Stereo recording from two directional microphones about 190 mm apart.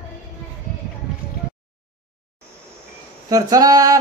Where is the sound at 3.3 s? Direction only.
20° right (ahead or behind).